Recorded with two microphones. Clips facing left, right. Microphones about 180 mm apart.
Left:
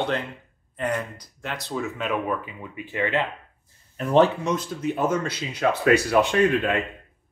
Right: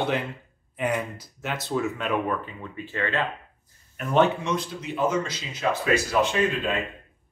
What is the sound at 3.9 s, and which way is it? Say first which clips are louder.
Speech: left 3 dB; 35° left (ahead or behind).